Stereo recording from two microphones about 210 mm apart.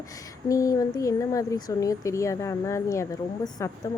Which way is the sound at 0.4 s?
15° left (ahead or behind).